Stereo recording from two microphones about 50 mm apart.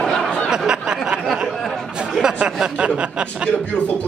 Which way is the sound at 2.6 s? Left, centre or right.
Right.